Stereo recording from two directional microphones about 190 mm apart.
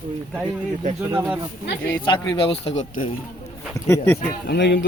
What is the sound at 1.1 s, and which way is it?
Speech, 10° right (ahead or behind).